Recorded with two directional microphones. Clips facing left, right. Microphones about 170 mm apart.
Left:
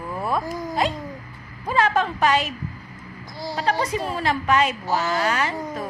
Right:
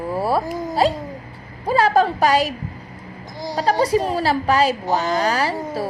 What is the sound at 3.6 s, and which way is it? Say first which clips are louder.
A woman's voice: right 6 dB; 40° right (ahead or behind).